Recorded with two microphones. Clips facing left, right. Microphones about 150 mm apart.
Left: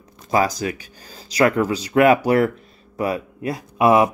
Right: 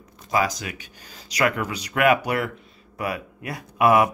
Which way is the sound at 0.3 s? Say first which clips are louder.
Left 4 dB; 35° left (ahead or behind).